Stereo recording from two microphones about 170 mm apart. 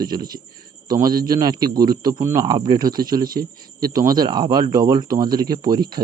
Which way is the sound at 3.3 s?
60° right (ahead or behind).